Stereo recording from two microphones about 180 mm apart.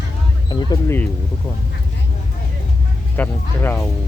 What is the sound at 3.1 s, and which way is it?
Speech, 10° left (ahead or behind).